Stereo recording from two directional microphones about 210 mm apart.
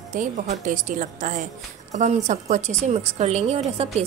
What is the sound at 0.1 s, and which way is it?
A woman's voice, 40° right (ahead or behind).